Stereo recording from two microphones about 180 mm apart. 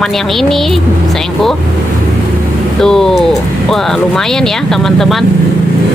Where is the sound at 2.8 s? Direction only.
Centre (ahead or behind).